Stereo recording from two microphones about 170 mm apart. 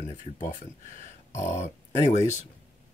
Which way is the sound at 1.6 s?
45° left (ahead or behind).